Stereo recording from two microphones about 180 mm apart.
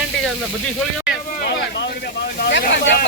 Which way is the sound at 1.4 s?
60° left (ahead or behind).